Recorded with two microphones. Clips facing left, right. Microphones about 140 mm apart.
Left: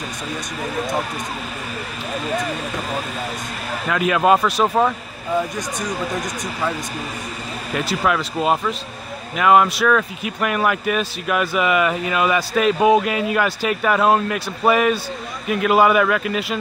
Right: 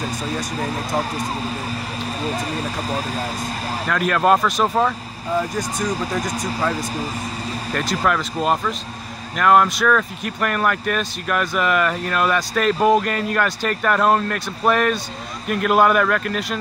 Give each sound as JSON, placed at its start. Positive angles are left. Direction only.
{"t": 2.2, "sound": "speech", "side_deg": -35}
{"t": 3.9, "sound": "speech", "side_deg": 5}
{"t": 7.7, "sound": "speech", "side_deg": 5}